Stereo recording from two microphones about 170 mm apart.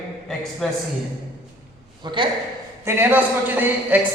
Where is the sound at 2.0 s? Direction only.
30° right (ahead or behind).